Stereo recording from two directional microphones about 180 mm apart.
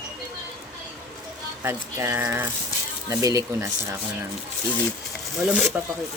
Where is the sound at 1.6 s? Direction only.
15° right (ahead or behind).